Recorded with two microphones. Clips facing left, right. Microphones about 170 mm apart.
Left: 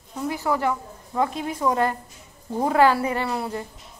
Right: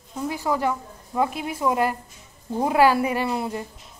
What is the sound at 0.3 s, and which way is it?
A woman's voice, 15° right (ahead or behind).